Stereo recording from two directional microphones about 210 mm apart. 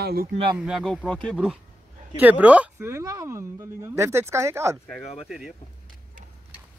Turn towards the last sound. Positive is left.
turn(degrees=0)  # may be behind; listen again after turning